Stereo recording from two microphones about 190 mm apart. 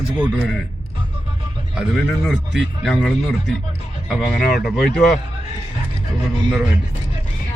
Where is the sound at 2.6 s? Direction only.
Centre (ahead or behind).